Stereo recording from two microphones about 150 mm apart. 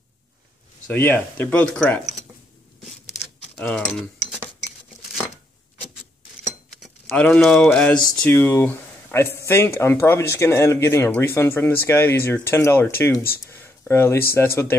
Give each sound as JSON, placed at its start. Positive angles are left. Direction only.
{"t": 0.8, "sound": "speech", "side_deg": 10}
{"t": 3.5, "sound": "speech", "side_deg": 10}
{"t": 7.1, "sound": "speech", "side_deg": 10}
{"t": 13.3, "sound": "a sound", "side_deg": 15}
{"t": 14.3, "sound": "speech", "side_deg": 15}